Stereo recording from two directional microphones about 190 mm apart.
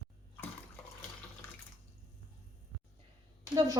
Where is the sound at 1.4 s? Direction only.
15° left (ahead or behind).